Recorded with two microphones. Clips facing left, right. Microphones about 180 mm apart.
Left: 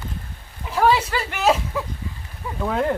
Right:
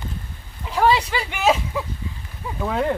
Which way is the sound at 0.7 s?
5° left (ahead or behind).